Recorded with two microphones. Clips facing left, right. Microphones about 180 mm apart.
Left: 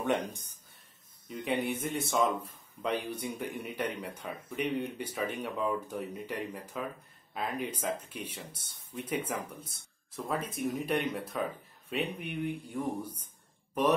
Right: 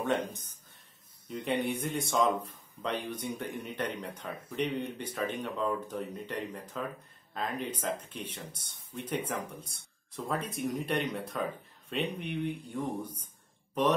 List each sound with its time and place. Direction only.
0.0 s speech: 15° left (ahead or behind)
1.3 s speech: centre (ahead or behind)